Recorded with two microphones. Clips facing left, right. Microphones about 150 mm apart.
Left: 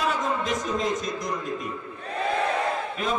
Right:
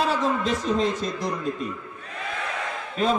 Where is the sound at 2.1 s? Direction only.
35° left (ahead or behind).